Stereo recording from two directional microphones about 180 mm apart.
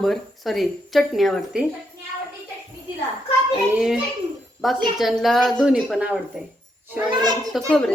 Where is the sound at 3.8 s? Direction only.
5° right (ahead or behind).